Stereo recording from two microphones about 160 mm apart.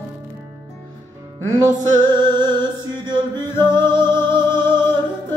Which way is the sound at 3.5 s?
15° left (ahead or behind).